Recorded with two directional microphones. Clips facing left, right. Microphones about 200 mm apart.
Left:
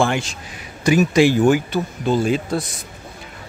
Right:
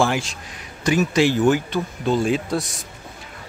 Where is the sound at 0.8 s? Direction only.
10° left (ahead or behind).